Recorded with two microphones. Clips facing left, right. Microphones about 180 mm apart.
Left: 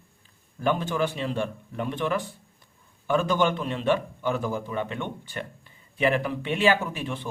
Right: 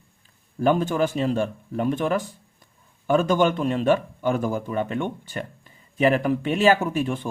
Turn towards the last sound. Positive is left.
turn(degrees=-45)  # may be behind; listen again after turning